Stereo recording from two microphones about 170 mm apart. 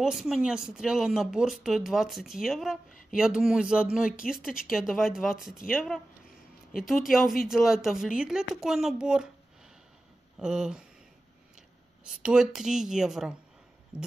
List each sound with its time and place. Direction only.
0.0 s speech: 5° right (ahead or behind)
2.9 s a sound: 55° left (ahead or behind)
3.2 s speech: 5° right (ahead or behind)
6.8 s speech: centre (ahead or behind)
10.4 s speech: 5° right (ahead or behind)
12.0 s speech: 5° right (ahead or behind)